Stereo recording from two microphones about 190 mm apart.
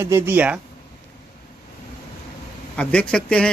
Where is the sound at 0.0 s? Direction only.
10° right (ahead or behind).